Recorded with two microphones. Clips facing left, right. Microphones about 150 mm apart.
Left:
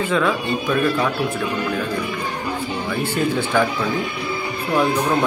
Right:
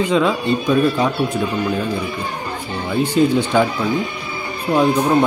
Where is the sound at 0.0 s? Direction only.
15° right (ahead or behind).